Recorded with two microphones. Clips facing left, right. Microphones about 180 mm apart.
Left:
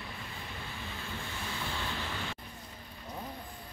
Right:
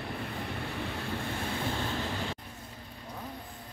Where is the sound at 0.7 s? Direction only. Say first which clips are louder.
Right 7 dB; 65° right (ahead or behind).